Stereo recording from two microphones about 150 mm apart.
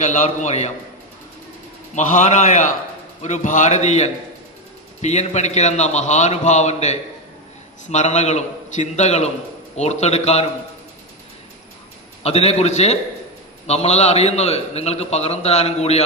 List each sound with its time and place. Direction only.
0.0 s a man's voice: 55° left (ahead or behind)
2.0 s a man's voice: 55° left (ahead or behind)
12.2 s a man's voice: 40° left (ahead or behind)